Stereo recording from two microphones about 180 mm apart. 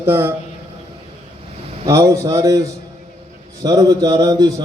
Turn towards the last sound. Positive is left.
turn(degrees=-20)  # may be behind; listen again after turning